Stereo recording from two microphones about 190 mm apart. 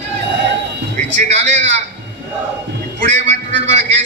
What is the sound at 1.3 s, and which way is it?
Speech, 35° right (ahead or behind).